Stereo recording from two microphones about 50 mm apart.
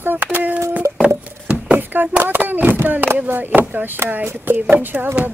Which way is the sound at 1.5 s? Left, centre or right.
Right.